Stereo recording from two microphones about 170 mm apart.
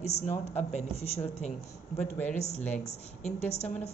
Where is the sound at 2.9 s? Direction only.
40° left (ahead or behind).